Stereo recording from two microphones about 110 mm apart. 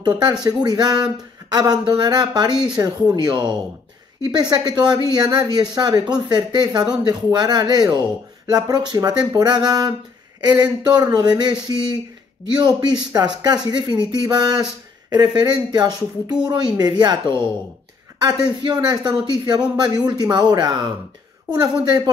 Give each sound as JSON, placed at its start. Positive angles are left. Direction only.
{"t": 0.0, "sound": "speech", "side_deg": -40}
{"t": 18.6, "sound": "speech", "side_deg": -45}